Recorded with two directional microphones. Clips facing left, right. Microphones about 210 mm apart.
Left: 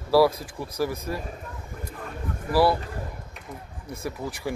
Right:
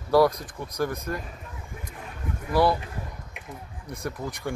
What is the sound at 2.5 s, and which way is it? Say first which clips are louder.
Speech: left 1 dB; 5° left (ahead or behind).